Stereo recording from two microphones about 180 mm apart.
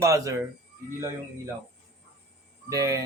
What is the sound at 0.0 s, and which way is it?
Speech, 15° right (ahead or behind).